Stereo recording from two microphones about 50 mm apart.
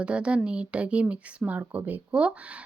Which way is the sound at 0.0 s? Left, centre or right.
Right.